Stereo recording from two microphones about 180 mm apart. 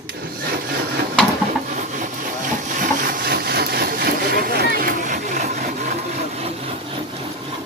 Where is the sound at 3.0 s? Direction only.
55° right (ahead or behind).